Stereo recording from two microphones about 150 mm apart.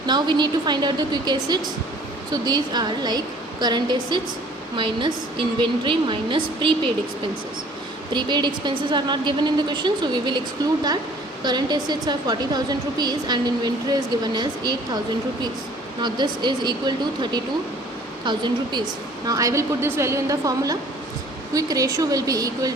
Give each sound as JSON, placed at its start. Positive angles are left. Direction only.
{"t": 0.0, "sound": "a woman's voice", "side_deg": -30}
{"t": 8.1, "sound": "a woman's voice", "side_deg": -30}
{"t": 11.4, "sound": "a woman's voice", "side_deg": -30}
{"t": 16.0, "sound": "a woman's voice", "side_deg": -30}